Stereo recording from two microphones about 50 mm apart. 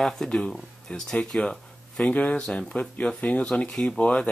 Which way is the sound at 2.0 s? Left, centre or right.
Left.